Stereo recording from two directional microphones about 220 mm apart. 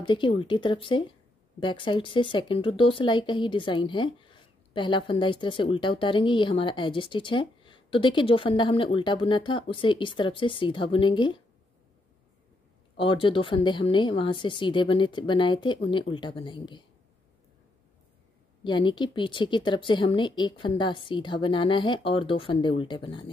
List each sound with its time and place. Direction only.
0.0 s speech: 20° left (ahead or behind)
12.9 s speech: 25° left (ahead or behind)
18.6 s speech: 20° left (ahead or behind)